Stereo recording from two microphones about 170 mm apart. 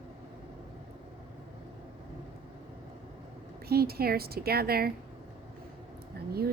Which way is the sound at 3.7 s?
65° right (ahead or behind).